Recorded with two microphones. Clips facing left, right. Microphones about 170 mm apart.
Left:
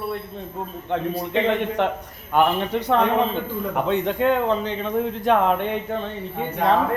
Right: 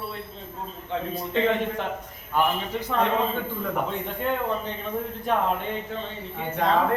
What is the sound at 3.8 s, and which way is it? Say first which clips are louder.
A man's voice: left 8 dB; 85° left.